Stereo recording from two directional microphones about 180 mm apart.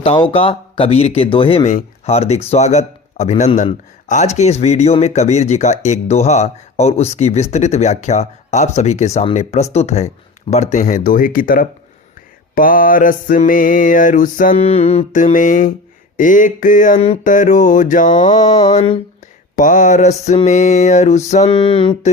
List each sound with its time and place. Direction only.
0.0 s a man's voice: 30° left (ahead or behind)
10.5 s mantra: 40° left (ahead or behind)
14.6 s mantra: 35° left (ahead or behind)
19.5 s a man's voice: 45° left (ahead or behind)
21.5 s a sound: 25° left (ahead or behind)